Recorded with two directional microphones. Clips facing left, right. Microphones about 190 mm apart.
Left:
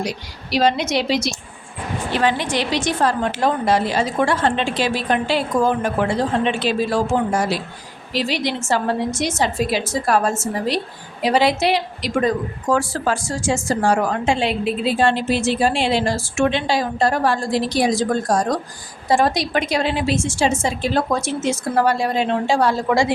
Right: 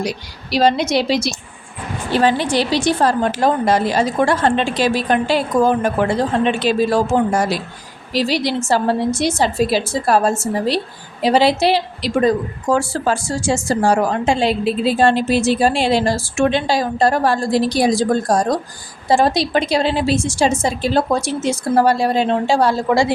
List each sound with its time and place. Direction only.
0.5 s a woman's voice: 35° right (ahead or behind)